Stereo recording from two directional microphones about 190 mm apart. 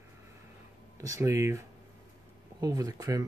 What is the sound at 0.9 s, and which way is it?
Speech, 15° right (ahead or behind).